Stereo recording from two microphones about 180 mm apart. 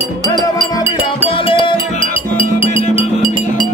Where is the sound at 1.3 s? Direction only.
30° left (ahead or behind).